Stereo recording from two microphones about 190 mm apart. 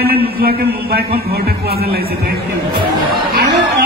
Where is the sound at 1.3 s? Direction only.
55° right (ahead or behind).